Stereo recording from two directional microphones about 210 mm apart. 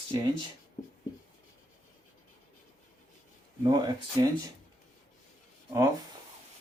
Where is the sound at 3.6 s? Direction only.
20° right (ahead or behind).